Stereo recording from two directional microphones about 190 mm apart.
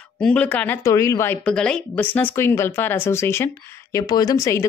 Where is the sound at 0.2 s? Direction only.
5° left (ahead or behind).